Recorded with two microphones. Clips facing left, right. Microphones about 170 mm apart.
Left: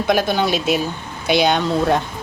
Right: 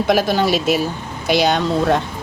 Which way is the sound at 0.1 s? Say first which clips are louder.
Right 1 dB; centre (ahead or behind).